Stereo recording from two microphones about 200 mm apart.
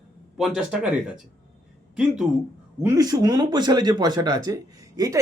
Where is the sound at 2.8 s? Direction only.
15° right (ahead or behind).